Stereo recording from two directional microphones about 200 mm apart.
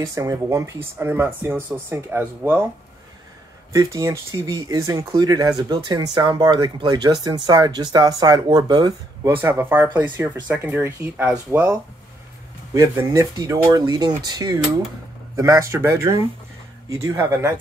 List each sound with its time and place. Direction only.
0.0 s speech: 15° right (ahead or behind)
3.7 s speech: 15° right (ahead or behind)
9.3 s speech: 10° right (ahead or behind)
12.7 s speech: 15° right (ahead or behind)